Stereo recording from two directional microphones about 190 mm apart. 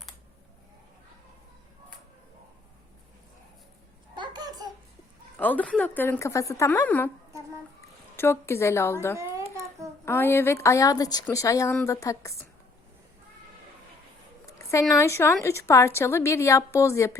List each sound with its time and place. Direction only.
4.1 s babbling: 25° right (ahead or behind)
5.4 s a woman's voice: 10° left (ahead or behind)
9.1 s a sound: 15° right (ahead or behind)
10.1 s a woman's voice: 10° left (ahead or behind)
14.4 s a sound: 15° left (ahead or behind)
14.9 s a woman's voice: 15° left (ahead or behind)